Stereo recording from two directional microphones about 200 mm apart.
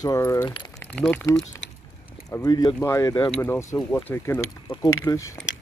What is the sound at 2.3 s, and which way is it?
Speech, 20° left (ahead or behind).